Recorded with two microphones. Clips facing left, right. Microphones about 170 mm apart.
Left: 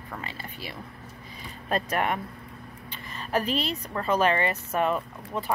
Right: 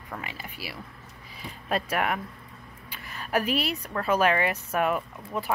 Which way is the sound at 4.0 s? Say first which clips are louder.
Even; 10° right (ahead or behind).